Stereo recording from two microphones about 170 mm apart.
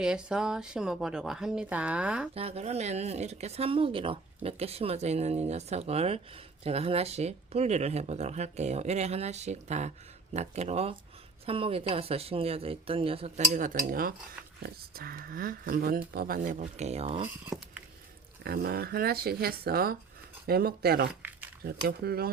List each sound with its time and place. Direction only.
0.0 s speech: 5° right (ahead or behind)
2.3 s speech: 35° right (ahead or behind)
18.4 s speech: 65° right (ahead or behind)